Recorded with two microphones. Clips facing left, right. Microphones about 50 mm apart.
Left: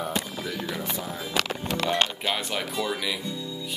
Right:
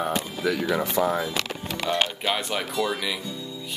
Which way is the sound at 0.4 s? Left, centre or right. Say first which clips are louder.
Right 7 dB; right.